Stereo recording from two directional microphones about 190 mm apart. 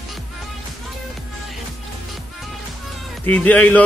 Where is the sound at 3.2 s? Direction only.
10° left (ahead or behind).